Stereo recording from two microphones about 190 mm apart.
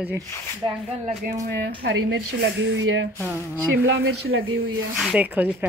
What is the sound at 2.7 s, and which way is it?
Speech, 85° right.